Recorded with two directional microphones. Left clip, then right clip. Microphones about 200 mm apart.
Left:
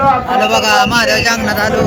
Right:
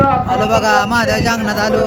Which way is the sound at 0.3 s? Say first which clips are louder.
Left 2 dB; 65° right (ahead or behind).